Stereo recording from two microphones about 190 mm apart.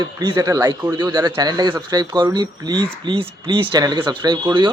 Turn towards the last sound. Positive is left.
turn(degrees=-25)  # may be behind; listen again after turning